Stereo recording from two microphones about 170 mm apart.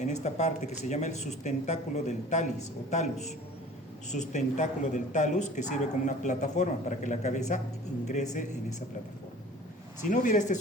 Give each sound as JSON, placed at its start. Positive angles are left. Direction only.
{"t": 0.0, "sound": "speech", "side_deg": 40}
{"t": 10.1, "sound": "speech", "side_deg": 45}